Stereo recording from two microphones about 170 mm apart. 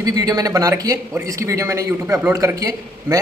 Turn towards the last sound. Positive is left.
turn(degrees=-20)  # may be behind; listen again after turning